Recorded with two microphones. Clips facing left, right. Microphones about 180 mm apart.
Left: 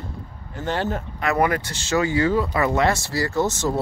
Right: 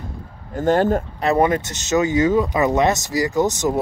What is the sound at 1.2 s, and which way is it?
Speech, 25° right (ahead or behind).